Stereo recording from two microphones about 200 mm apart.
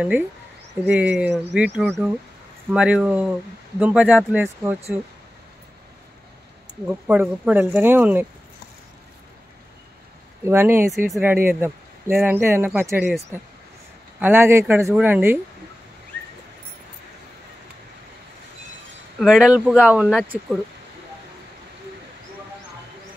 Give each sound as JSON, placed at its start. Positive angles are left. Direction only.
{"t": 0.8, "sound": "speech", "side_deg": -5}
{"t": 6.9, "sound": "speech", "side_deg": -5}
{"t": 10.4, "sound": "speech", "side_deg": -10}
{"t": 14.2, "sound": "speech", "side_deg": -10}
{"t": 19.1, "sound": "speech", "side_deg": 0}